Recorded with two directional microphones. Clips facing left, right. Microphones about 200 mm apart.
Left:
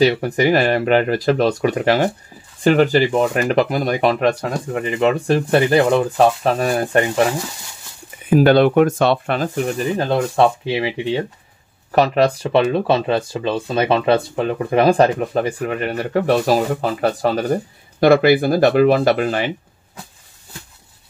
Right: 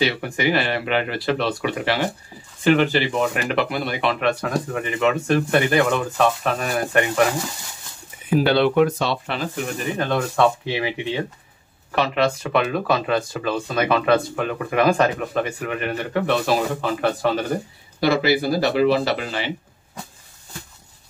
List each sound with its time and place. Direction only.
0.0 s speech: 40° left (ahead or behind)
8.3 s speech: 45° left (ahead or behind)
9.9 s speech: 35° left (ahead or behind)
18.0 s speech: 55° left (ahead or behind)